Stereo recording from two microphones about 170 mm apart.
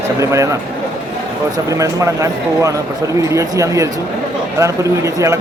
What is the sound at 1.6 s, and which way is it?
A man's voice, 20° right (ahead or behind).